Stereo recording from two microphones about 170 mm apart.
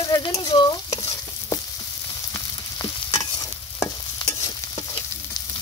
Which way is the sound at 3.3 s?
25° left (ahead or behind).